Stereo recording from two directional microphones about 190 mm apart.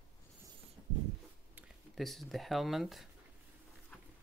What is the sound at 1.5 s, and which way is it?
Speech, 5° right (ahead or behind).